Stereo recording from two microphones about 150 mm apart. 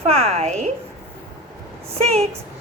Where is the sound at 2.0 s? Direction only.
45° right (ahead or behind).